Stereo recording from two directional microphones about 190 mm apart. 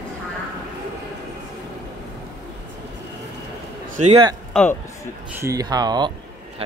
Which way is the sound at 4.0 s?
30° right (ahead or behind).